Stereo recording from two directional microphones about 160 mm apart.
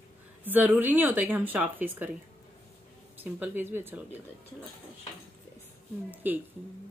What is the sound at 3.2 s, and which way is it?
Speech, 10° right (ahead or behind).